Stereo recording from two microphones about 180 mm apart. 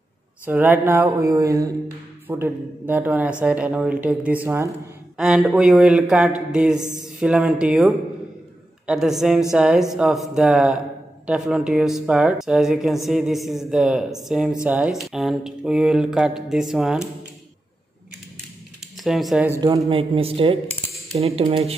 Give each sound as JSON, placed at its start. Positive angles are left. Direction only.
{"t": 0.5, "sound": "a woman's voice", "side_deg": -10}
{"t": 19.0, "sound": "a woman's voice", "side_deg": 0}
{"t": 19.9, "sound": "speech", "side_deg": -30}